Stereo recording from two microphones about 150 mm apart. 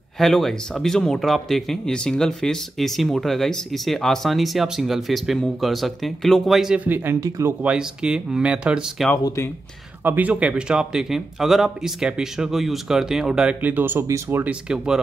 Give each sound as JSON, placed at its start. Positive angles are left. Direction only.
{"t": 0.2, "sound": "speech", "side_deg": 0}
{"t": 7.6, "sound": "speech", "side_deg": -5}
{"t": 9.1, "sound": "speech", "side_deg": 20}
{"t": 10.0, "sound": "speech", "side_deg": -10}